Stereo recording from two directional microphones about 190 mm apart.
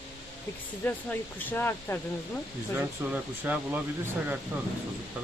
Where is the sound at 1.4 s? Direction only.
10° left (ahead or behind).